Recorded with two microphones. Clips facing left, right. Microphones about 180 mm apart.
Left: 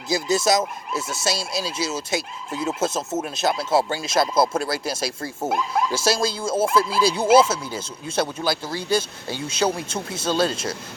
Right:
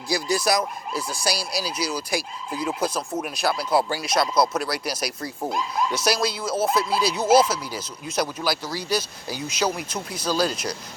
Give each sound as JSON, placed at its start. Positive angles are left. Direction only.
{"t": 0.1, "sound": "speech", "side_deg": 25}